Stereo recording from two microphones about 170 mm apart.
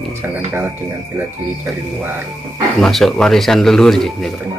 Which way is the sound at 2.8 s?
Centre (ahead or behind).